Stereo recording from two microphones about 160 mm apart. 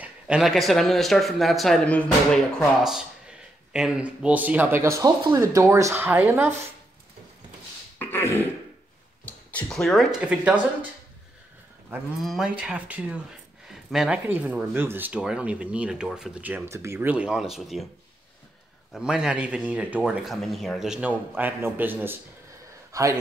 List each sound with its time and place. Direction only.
0.0 s speech: 5° right (ahead or behind)
8.0 s throat clearing: 15° left (ahead or behind)
9.2 s speech: 10° left (ahead or behind); by 10.9 s 10° right (ahead or behind)
12.2 s speech: centre (ahead or behind)
18.9 s a man's voice: 5° right (ahead or behind); by 23.1 s 20° right (ahead or behind)